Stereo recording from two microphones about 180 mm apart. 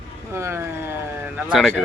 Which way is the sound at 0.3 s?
15° right (ahead or behind).